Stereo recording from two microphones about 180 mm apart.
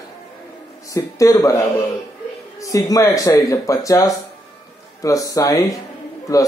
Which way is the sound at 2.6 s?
20° left (ahead or behind).